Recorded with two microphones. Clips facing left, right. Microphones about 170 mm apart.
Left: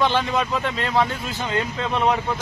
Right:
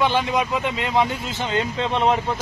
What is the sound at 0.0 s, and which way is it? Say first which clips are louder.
Speech: right 1 dB; 15° right (ahead or behind).